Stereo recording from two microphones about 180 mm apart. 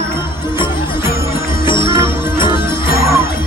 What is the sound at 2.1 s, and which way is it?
Music, 15° right (ahead or behind).